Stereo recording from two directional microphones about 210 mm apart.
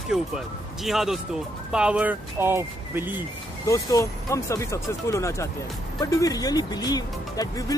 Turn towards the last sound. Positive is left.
turn(degrees=15)  # may be behind; listen again after turning